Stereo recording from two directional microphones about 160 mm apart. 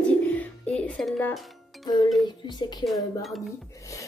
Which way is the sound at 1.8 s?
25° left (ahead or behind).